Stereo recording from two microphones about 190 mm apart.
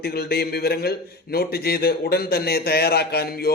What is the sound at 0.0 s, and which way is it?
A man's voice, 55° left (ahead or behind).